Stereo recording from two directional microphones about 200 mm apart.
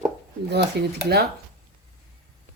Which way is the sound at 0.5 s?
55° right (ahead or behind).